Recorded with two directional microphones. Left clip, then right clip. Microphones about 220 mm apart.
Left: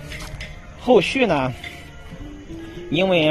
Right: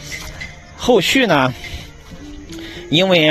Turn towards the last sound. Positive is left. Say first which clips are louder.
# right 5 dB
turn(degrees=-35)  # may be behind; listen again after turning